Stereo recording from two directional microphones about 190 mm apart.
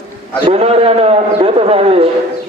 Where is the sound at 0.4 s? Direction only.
30° right (ahead or behind).